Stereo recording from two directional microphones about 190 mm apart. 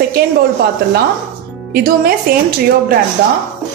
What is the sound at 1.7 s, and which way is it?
Speech, 50° right (ahead or behind).